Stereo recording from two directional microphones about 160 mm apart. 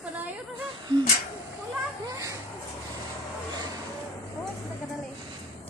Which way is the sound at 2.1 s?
20° right (ahead or behind).